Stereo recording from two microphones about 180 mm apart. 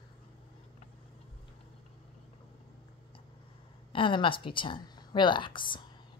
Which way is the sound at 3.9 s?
30° left (ahead or behind).